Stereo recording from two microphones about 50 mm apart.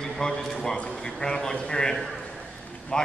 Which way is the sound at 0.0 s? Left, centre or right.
Centre.